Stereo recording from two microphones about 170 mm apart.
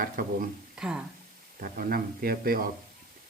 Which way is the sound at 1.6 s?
55° right (ahead or behind).